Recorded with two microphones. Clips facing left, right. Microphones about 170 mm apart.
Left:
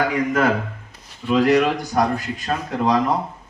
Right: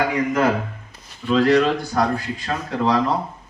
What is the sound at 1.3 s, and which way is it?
A man's voice, 15° left (ahead or behind).